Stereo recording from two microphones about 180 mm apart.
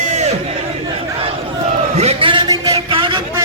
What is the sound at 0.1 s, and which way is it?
Crowd, 40° right (ahead or behind).